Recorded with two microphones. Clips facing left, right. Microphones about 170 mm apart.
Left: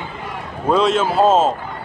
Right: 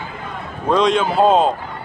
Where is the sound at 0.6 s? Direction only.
5° left (ahead or behind).